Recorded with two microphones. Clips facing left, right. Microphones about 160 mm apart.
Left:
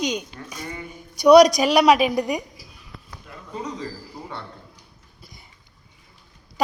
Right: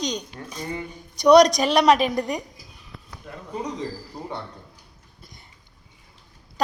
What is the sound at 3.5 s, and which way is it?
Speech, 20° right (ahead or behind).